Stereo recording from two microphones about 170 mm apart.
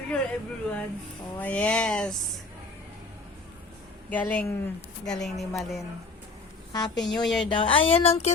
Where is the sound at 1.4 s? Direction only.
10° left (ahead or behind).